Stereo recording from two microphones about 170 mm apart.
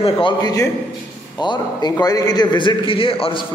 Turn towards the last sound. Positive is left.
turn(degrees=30)  # may be behind; listen again after turning